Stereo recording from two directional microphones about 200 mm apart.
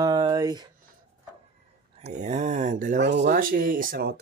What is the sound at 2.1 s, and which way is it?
Speech, 35° right (ahead or behind).